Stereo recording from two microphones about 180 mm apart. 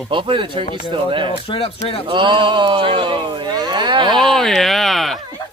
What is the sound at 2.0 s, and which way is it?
Speech, 25° right (ahead or behind).